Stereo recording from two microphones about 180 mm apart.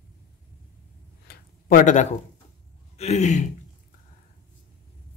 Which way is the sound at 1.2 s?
55° left (ahead or behind).